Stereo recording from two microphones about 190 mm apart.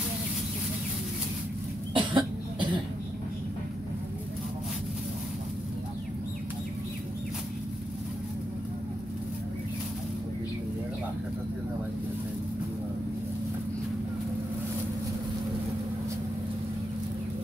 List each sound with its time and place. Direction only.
2.0 s cough: 25° right (ahead or behind)